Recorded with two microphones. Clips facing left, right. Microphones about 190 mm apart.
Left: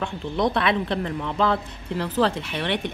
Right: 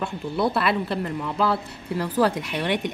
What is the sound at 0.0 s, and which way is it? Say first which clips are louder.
Speech: even; 5° right (ahead or behind).